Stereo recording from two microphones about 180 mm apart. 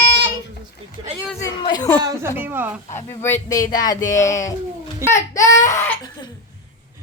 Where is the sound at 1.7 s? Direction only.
20° left (ahead or behind).